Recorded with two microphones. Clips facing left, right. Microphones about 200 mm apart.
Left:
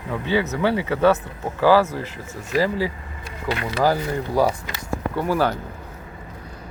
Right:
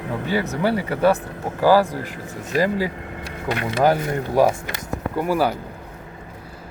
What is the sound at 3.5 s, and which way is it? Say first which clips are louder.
Speech: right 2 dB; 20° right (ahead or behind).